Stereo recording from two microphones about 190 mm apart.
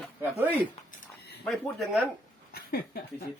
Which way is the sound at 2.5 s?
55° left (ahead or behind).